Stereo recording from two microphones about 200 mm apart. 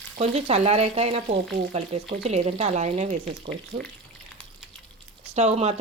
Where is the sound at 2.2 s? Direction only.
30° right (ahead or behind).